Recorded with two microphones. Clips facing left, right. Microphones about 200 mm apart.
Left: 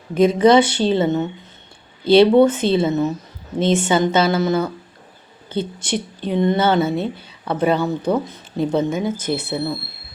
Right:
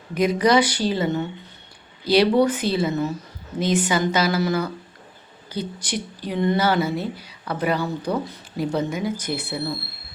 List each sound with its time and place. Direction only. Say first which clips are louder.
0.1 s speech: left 6 dB; 25° left (ahead or behind)